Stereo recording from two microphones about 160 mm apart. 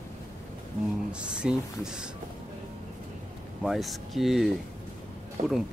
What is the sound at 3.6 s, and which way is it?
Speech, centre (ahead or behind).